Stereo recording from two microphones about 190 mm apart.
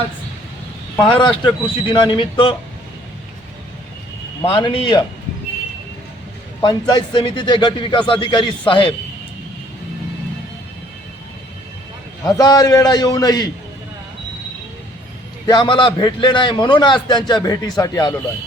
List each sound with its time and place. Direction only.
0.9 s a man's voice: 25° left (ahead or behind)
4.4 s a man's voice: 25° left (ahead or behind)
6.6 s a man's voice: 20° left (ahead or behind)
12.2 s a man's voice: 20° left (ahead or behind)
15.4 s a man's voice: 25° left (ahead or behind)